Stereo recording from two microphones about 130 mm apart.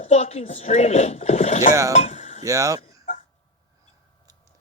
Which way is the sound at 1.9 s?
55° left (ahead or behind).